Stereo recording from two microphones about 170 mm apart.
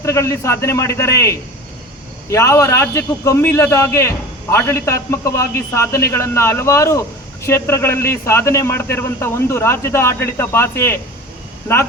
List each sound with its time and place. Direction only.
0.0 s a man's voice: 15° left (ahead or behind)